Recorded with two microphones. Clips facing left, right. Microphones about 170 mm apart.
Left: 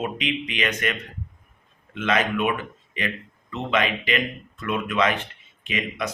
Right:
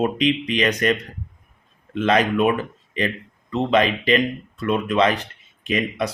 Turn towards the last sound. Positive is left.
turn(degrees=-40)  # may be behind; listen again after turning